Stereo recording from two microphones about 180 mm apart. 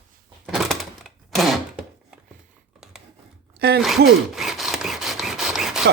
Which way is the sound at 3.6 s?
65° right (ahead or behind).